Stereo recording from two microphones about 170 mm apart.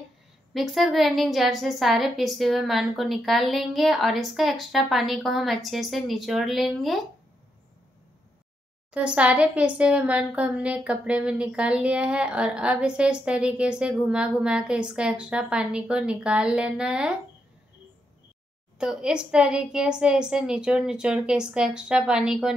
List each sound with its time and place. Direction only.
0.5 s a woman's voice: centre (ahead or behind)
8.9 s a woman's voice: 5° right (ahead or behind)
18.8 s a woman's voice: 5° right (ahead or behind)